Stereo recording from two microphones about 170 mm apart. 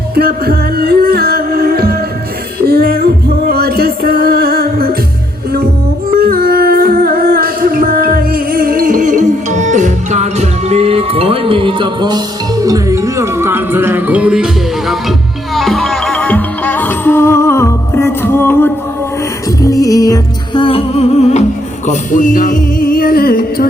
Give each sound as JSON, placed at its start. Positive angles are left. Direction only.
{"t": 0.1, "sound": "music", "side_deg": -65}
{"t": 6.1, "sound": "music", "side_deg": -60}
{"t": 21.8, "sound": "music", "side_deg": 50}